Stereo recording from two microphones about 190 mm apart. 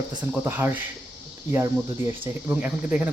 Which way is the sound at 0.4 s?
10° right (ahead or behind).